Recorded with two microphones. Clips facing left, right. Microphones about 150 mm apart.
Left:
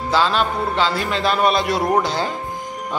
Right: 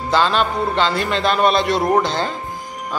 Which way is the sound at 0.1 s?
5° left (ahead or behind).